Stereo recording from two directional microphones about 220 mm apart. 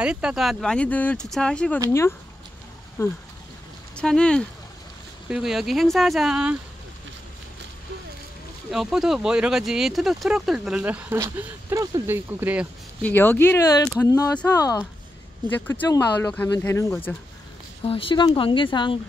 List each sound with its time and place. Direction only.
0.0 s speech: 5° right (ahead or behind)
8.7 s speech: centre (ahead or behind)
13.0 s speech: 10° left (ahead or behind)
17.8 s speech: 25° left (ahead or behind)